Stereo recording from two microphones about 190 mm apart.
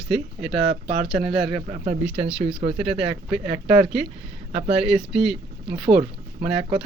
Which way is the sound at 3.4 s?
30° right (ahead or behind).